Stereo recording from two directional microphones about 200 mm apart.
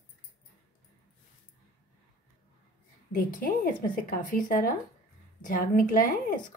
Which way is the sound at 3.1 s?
45° left (ahead or behind).